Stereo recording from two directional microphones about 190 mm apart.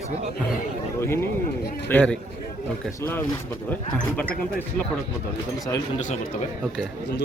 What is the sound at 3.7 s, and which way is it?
Speech, 5° left (ahead or behind).